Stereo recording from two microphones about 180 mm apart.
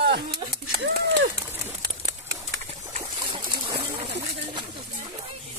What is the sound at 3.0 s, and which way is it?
Splash, 25° right (ahead or behind).